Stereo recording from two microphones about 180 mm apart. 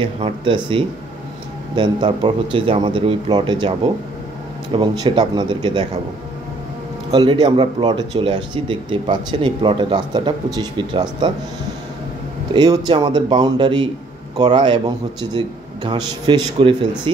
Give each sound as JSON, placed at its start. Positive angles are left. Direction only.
{"t": 0.0, "sound": "speech", "side_deg": -25}
{"t": 1.8, "sound": "speech", "side_deg": -25}
{"t": 7.1, "sound": "speech", "side_deg": -25}
{"t": 12.5, "sound": "speech", "side_deg": -20}